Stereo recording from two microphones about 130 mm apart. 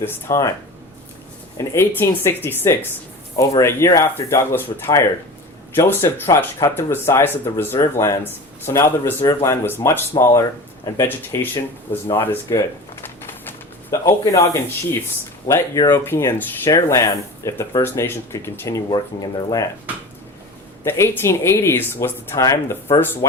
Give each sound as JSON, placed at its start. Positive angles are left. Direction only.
{"t": 0.0, "sound": "speech", "side_deg": 20}
{"t": 1.5, "sound": "speech", "side_deg": 20}
{"t": 18.9, "sound": "speech", "side_deg": 30}
{"t": 20.8, "sound": "speech", "side_deg": 20}